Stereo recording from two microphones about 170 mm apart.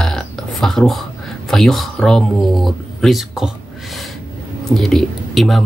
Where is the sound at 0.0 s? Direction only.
Centre (ahead or behind).